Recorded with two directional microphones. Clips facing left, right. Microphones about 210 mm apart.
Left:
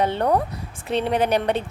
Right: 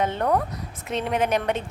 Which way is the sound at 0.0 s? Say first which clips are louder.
Left 2 dB; 30° left (ahead or behind).